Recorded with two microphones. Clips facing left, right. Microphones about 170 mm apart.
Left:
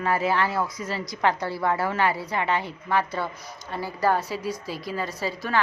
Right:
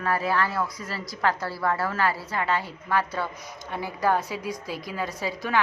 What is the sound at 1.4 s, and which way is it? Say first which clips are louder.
Speech: left 2 dB; 20° left (ahead or behind).